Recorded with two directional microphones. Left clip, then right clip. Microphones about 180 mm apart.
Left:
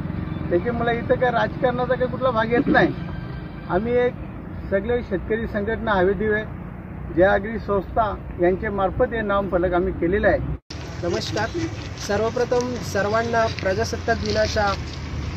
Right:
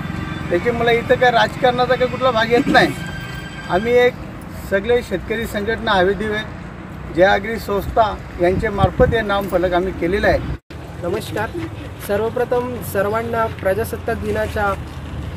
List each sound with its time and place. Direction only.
0.7 s speech: 20° right (ahead or behind)
11.1 s speech: 5° right (ahead or behind)